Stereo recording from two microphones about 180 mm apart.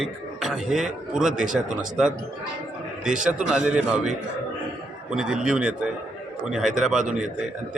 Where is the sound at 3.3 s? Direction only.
5° right (ahead or behind).